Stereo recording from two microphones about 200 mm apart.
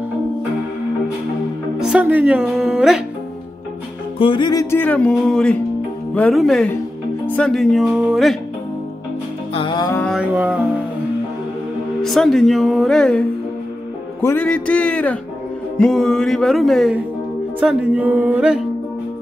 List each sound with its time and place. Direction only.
1.8 s speech: 5° right (ahead or behind)
4.2 s music: 25° left (ahead or behind); by 5.6 s 5° left (ahead or behind)
6.1 s speech: 5° left (ahead or behind)
9.5 s music: 25° left (ahead or behind)
10.3 s music: 10° right (ahead or behind)
12.0 s speech: centre (ahead or behind)
14.2 s music: 10° left (ahead or behind)
15.8 s speech: centre (ahead or behind)
17.6 s music: 5° right (ahead or behind)